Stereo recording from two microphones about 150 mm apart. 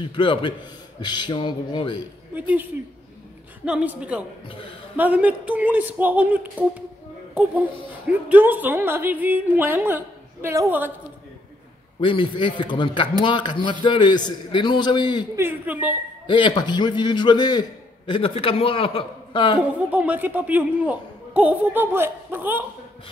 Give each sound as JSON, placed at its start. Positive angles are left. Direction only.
{"t": 0.0, "sound": "a man's voice", "side_deg": 35}
{"t": 2.3, "sound": "speech", "side_deg": -10}
{"t": 3.6, "sound": "speech", "side_deg": -10}
{"t": 8.3, "sound": "speech", "side_deg": -10}
{"t": 12.0, "sound": "a man's voice", "side_deg": 35}
{"t": 15.3, "sound": "speech", "side_deg": -15}
{"t": 16.3, "sound": "a man's voice", "side_deg": 30}
{"t": 19.6, "sound": "speech", "side_deg": -10}